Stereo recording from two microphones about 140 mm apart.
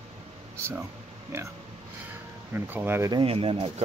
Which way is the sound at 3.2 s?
40° right (ahead or behind).